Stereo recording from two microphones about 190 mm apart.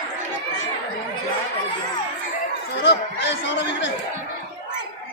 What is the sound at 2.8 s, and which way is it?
Speech, 65° left (ahead or behind).